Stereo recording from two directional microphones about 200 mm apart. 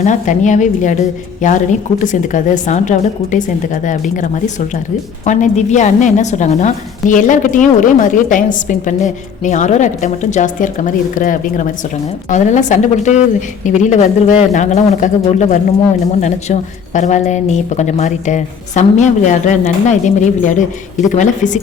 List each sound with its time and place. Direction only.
0.0 s a woman's voice: 40° left (ahead or behind)